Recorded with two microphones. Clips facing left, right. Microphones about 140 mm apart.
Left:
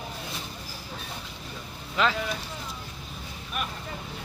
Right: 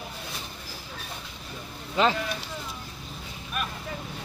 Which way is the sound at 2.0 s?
25° right (ahead or behind).